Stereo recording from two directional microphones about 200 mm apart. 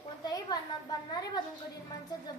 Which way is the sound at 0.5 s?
20° left (ahead or behind).